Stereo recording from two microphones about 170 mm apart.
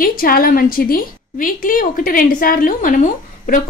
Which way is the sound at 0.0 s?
55° left (ahead or behind).